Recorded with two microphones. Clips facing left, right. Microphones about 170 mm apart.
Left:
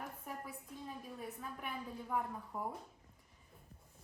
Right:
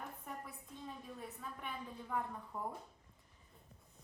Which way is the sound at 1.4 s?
5° left (ahead or behind).